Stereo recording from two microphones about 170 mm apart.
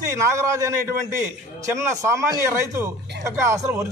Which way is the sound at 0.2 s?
15° right (ahead or behind).